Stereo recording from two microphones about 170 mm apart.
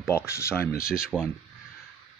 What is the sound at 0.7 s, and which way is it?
Speech, 60° left (ahead or behind).